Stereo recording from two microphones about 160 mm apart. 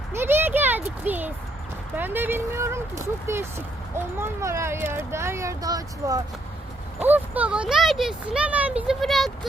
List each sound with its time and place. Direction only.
0.1 s a sound: 15° right (ahead or behind)
1.0 s speech: 10° right (ahead or behind)
7.0 s speech: 10° right (ahead or behind)